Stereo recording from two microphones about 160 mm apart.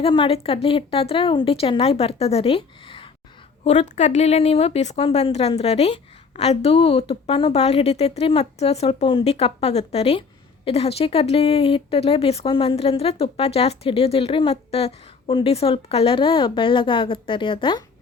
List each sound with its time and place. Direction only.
0.0 s speech: 35° left (ahead or behind)
3.6 s speech: 45° left (ahead or behind); by 17.8 s 30° left (ahead or behind)